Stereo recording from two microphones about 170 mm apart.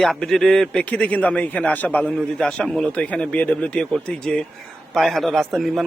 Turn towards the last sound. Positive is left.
turn(degrees=0)  # may be behind; listen again after turning